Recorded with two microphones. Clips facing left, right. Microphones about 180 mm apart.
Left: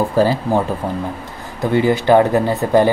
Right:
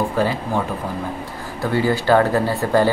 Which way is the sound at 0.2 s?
35° left (ahead or behind).